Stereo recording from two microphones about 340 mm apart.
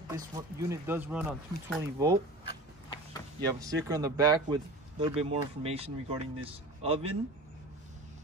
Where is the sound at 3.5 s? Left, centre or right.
Centre.